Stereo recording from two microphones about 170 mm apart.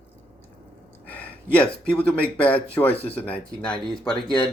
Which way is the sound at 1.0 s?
10° left (ahead or behind).